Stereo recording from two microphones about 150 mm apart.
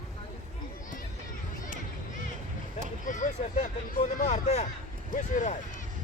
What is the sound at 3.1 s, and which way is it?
Speech, 55° left (ahead or behind).